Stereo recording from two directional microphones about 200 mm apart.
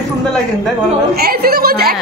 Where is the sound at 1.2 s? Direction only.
50° right (ahead or behind).